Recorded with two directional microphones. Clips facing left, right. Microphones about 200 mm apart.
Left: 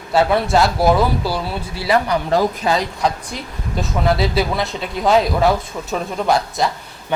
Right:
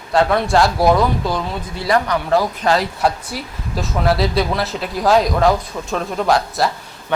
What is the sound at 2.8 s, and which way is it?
Speech, 5° right (ahead or behind).